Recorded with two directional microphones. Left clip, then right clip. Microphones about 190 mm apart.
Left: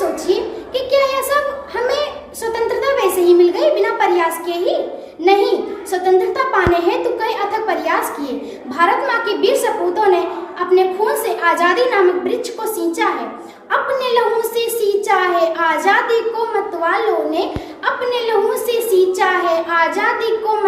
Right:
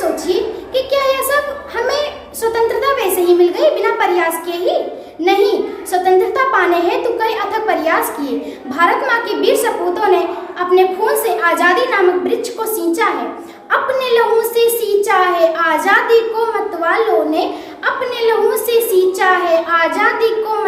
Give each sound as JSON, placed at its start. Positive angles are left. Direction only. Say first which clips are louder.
{"t": 0.3, "sound": "a sound", "louder": "right 1 dB", "side_deg": -15}
{"t": 5.2, "sound": "a woman's voice", "louder": "right 1 dB", "side_deg": -15}
{"t": 13.7, "sound": "a woman's voice", "louder": "right 2 dB", "side_deg": -15}